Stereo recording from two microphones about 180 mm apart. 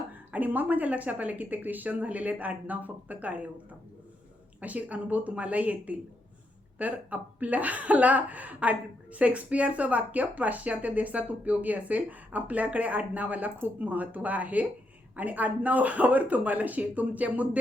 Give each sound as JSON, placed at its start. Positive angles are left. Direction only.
{"t": 0.3, "sound": "speech", "side_deg": -10}
{"t": 4.6, "sound": "speech", "side_deg": -10}